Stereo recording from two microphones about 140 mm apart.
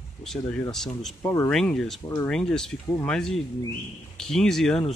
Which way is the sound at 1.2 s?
15° left (ahead or behind).